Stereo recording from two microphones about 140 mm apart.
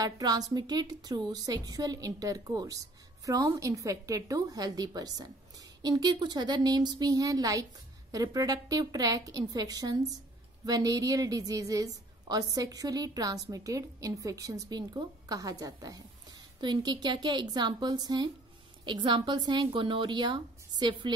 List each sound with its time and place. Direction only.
0.0 s a woman's voice: 30° right (ahead or behind)